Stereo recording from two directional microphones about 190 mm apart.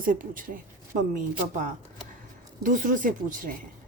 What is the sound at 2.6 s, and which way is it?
Speech, 45° right (ahead or behind).